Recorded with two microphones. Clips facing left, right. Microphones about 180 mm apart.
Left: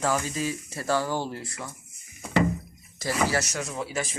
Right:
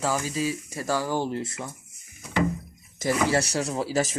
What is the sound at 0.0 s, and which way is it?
Speech, 10° right (ahead or behind).